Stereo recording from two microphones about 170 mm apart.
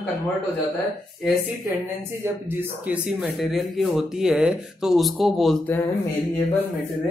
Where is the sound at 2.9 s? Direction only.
Centre (ahead or behind).